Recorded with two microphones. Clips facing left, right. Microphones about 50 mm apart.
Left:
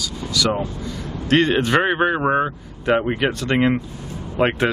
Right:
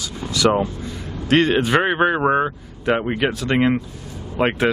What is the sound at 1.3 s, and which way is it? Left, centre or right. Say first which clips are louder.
Speech: even; centre.